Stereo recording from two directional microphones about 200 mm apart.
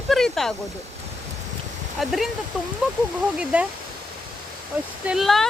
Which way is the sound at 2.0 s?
Centre (ahead or behind).